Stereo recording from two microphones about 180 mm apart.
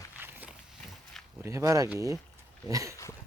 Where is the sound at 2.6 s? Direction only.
20° right (ahead or behind).